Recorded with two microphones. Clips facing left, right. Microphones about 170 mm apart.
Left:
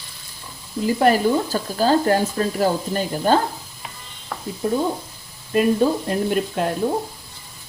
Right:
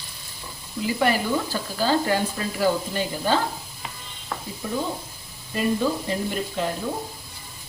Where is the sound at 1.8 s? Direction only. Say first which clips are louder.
Left 5 dB; 45° left (ahead or behind).